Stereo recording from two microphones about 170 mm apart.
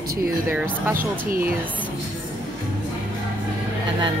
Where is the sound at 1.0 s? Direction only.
55° right (ahead or behind).